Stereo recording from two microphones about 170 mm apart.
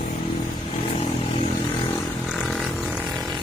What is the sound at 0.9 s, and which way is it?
Vehicle, 35° left (ahead or behind).